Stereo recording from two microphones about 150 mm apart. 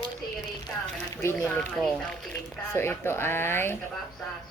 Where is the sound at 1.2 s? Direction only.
15° left (ahead or behind).